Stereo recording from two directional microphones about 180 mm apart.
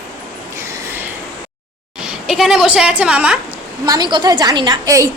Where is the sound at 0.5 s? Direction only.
10° right (ahead or behind).